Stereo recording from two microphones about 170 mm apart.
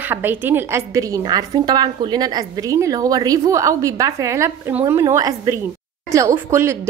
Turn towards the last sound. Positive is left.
turn(degrees=-15)  # may be behind; listen again after turning